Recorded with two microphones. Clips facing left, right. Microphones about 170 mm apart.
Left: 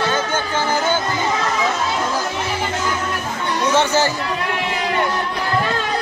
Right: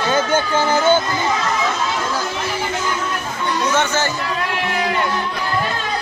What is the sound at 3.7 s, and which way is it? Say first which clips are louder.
Speech: left 5 dB; 35° left (ahead or behind).